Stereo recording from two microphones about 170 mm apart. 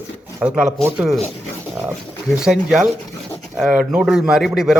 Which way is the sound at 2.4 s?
5° right (ahead or behind).